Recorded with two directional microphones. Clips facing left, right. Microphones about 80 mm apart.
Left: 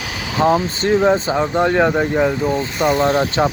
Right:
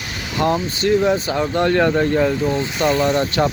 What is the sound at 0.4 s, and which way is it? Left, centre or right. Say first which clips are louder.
Speech: left 4 dB; left.